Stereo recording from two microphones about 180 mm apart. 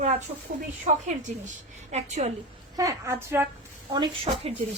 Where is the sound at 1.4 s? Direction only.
40° right (ahead or behind).